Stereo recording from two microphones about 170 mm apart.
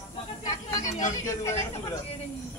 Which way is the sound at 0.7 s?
20° left (ahead or behind).